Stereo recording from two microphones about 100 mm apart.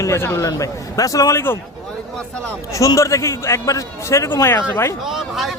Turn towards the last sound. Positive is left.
turn(degrees=0)  # may be behind; listen again after turning